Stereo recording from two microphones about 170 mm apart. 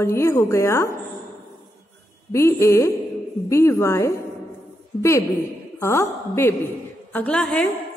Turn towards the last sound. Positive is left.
turn(degrees=5)  # may be behind; listen again after turning